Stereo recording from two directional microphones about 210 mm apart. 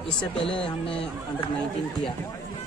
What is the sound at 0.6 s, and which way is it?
Speech, 25° left (ahead or behind).